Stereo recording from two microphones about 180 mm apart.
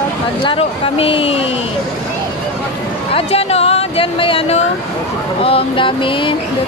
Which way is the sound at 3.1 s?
35° left (ahead or behind).